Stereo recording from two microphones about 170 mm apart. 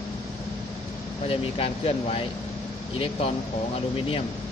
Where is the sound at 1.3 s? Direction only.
35° left (ahead or behind).